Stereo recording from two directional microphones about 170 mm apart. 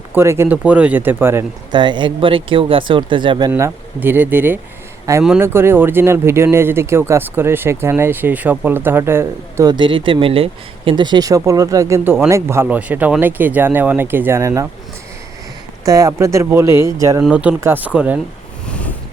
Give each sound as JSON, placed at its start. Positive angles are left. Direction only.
{"t": 0.1, "sound": "speech", "side_deg": -15}
{"t": 1.7, "sound": "speech", "side_deg": -25}
{"t": 3.5, "sound": "speech", "side_deg": -10}
{"t": 15.9, "sound": "speech", "side_deg": -20}
{"t": 17.2, "sound": "speech", "side_deg": -5}
{"t": 18.7, "sound": "vehicle", "side_deg": 10}